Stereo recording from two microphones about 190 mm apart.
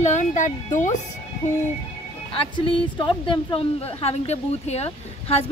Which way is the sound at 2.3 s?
25° left (ahead or behind).